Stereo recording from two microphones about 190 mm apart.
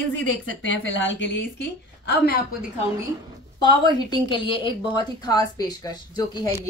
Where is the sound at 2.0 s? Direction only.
60° left (ahead or behind).